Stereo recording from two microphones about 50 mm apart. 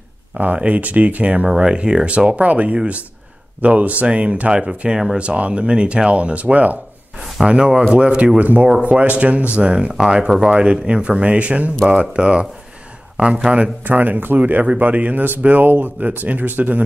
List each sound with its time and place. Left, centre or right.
0.6 s speech: right
7.4 s a man's voice: centre
13.8 s a man's voice: right